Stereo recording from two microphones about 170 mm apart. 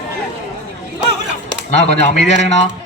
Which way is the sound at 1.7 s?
40° left (ahead or behind).